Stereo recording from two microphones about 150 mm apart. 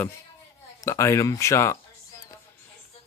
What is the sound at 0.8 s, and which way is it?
Speech, 20° left (ahead or behind).